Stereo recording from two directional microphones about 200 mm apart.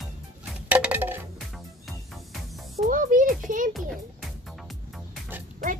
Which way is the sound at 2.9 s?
40° right (ahead or behind).